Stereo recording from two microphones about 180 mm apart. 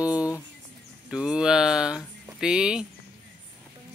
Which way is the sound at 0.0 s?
5° right (ahead or behind).